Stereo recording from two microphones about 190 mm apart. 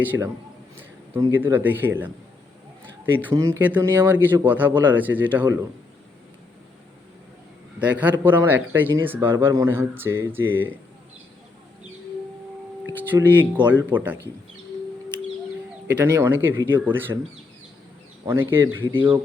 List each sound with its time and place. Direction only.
0.0 s speech: 10° right (ahead or behind)
7.8 s speech: 10° right (ahead or behind)
12.8 s a sound: 10° right (ahead or behind)
13.7 s speech: 10° right (ahead or behind)
16.0 s speech: 15° right (ahead or behind)
18.3 s speech: 10° right (ahead or behind)
18.9 s speech: 25° right (ahead or behind)